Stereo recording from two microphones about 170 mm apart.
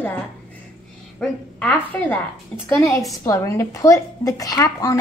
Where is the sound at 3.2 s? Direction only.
20° left (ahead or behind).